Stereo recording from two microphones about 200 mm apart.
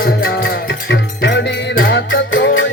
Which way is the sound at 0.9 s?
60° left (ahead or behind).